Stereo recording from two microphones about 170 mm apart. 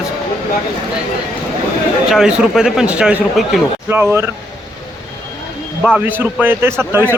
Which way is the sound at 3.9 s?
15° right (ahead or behind).